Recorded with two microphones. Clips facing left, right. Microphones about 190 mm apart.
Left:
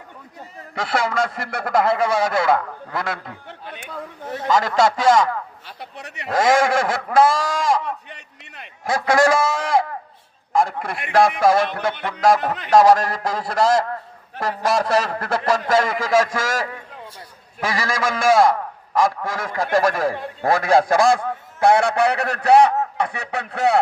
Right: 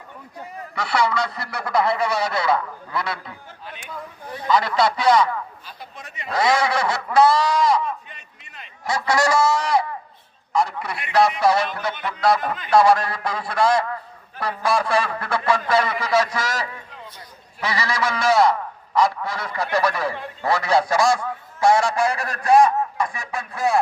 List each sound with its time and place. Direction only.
0.8 s a man's voice: 50° left (ahead or behind)
3.4 s a sound: 55° left (ahead or behind)
4.3 s a man's voice: 45° left (ahead or behind)
5.6 s speech: 70° left (ahead or behind)
6.3 s a man's voice: 45° left (ahead or behind)
7.9 s a sound: 65° left (ahead or behind); by 9.8 s 50° left (ahead or behind)
10.5 s a man's voice: 50° left (ahead or behind)
12.7 s a man's voice: 40° left (ahead or behind); by 23.8 s 65° left (ahead or behind)